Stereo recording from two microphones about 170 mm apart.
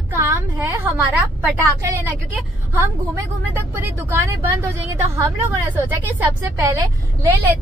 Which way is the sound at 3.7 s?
15° right (ahead or behind).